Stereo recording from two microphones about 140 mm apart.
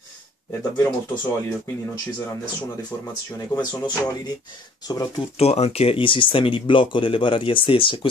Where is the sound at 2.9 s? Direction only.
20° left (ahead or behind).